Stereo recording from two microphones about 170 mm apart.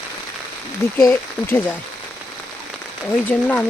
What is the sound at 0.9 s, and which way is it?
Speech, 15° left (ahead or behind).